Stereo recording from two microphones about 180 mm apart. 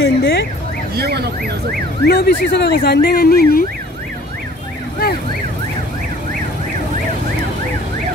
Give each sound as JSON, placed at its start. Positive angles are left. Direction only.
{"t": 0.0, "sound": "a sound", "side_deg": 75}
{"t": 0.9, "sound": "speech", "side_deg": -60}
{"t": 2.0, "sound": "speech", "side_deg": 60}